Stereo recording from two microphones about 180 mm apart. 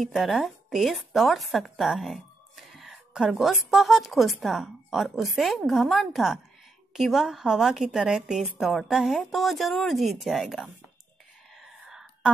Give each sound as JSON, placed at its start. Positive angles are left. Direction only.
{"t": 0.0, "sound": "a woman's voice", "side_deg": 0}
{"t": 11.5, "sound": "whispering", "side_deg": 0}